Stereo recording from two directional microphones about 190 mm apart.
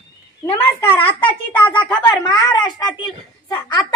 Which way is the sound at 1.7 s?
20° left (ahead or behind).